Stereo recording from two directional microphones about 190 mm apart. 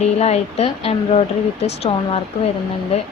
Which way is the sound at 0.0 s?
35° left (ahead or behind).